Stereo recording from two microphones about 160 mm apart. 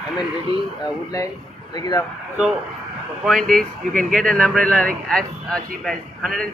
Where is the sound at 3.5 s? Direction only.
55° right (ahead or behind).